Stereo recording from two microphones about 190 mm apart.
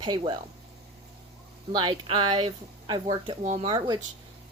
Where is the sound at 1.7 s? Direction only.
25° right (ahead or behind).